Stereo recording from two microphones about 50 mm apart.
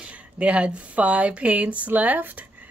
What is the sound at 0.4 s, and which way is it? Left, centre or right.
Speech, right.